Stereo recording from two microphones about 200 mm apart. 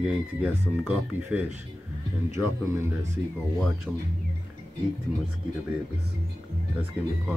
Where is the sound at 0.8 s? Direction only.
5° right (ahead or behind).